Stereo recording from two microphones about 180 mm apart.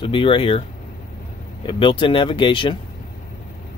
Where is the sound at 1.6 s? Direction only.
25° left (ahead or behind).